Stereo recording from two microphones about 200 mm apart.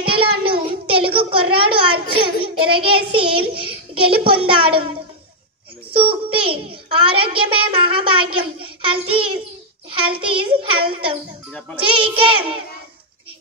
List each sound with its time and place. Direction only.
0.0 s a sound: 25° right (ahead or behind)
3.1 s a child's voice: 25° right (ahead or behind)
5.9 s a child's voice: 25° right (ahead or behind)